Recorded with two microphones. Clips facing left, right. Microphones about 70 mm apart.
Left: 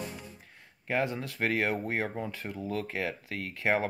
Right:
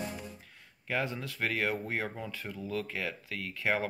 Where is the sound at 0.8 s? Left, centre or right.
Left.